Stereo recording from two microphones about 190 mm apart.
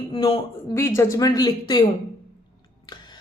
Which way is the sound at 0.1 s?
25° left (ahead or behind).